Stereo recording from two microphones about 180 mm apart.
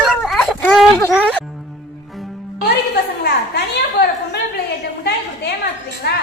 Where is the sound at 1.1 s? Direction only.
5° right (ahead or behind).